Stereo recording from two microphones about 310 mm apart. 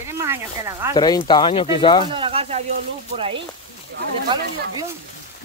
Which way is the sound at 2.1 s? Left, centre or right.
Centre.